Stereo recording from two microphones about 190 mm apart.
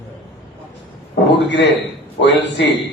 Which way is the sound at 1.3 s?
65° left (ahead or behind).